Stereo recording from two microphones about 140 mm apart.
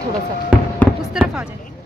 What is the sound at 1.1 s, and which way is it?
Speech, 10° right (ahead or behind).